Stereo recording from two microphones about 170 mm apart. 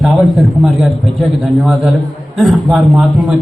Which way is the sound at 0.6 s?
Centre (ahead or behind).